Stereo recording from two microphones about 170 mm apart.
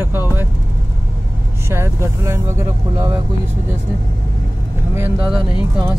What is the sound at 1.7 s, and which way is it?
Speech, 15° right (ahead or behind).